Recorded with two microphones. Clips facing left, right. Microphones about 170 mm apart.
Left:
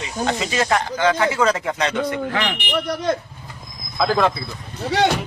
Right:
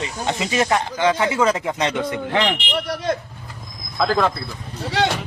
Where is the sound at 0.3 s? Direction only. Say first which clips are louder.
Right 1 dB; 20° right (ahead or behind).